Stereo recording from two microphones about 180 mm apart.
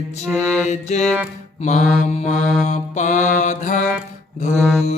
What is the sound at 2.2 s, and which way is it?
Mantra, 40° left (ahead or behind).